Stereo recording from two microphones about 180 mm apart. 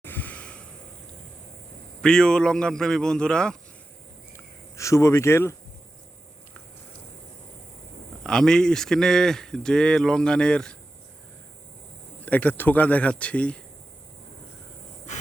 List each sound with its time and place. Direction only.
0.0 s breathing: 10° left (ahead or behind)
2.0 s speech: 5° left (ahead or behind)
4.8 s speech: 15° left (ahead or behind)
8.2 s speech: 5° left (ahead or behind)
12.2 s speech: 10° left (ahead or behind)